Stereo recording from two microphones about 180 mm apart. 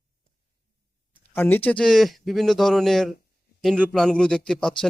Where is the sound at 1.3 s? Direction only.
10° left (ahead or behind).